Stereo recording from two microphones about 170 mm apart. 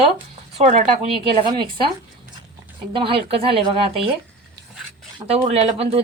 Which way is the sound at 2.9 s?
30° right (ahead or behind).